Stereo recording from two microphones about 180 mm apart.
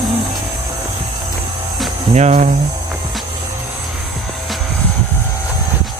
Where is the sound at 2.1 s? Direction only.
40° right (ahead or behind).